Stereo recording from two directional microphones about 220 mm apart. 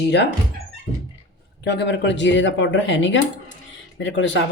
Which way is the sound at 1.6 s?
50° left (ahead or behind).